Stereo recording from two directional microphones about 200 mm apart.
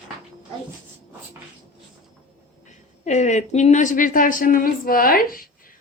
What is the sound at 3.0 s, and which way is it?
A woman's voice, 35° left (ahead or behind).